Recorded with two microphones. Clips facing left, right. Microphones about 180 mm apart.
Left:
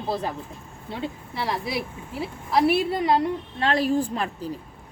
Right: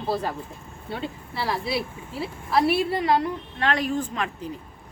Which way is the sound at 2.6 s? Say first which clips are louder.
Left 2 dB; 20° left (ahead or behind).